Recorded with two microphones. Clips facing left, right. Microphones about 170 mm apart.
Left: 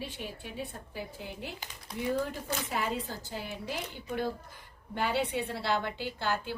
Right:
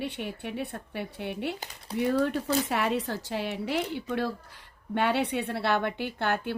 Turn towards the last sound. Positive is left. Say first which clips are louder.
# right 4 dB
turn(degrees=-60)  # may be behind; listen again after turning